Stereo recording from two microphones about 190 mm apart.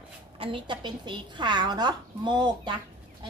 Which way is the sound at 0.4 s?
25° right (ahead or behind).